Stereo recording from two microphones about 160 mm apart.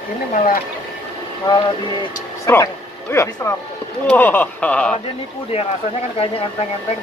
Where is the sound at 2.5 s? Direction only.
20° left (ahead or behind).